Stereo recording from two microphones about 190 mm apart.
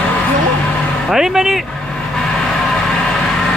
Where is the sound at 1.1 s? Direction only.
Centre (ahead or behind).